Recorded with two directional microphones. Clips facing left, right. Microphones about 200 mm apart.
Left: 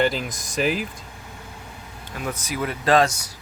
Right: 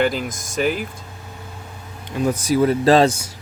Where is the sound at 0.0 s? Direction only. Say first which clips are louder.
Right 2 dB; centre (ahead or behind).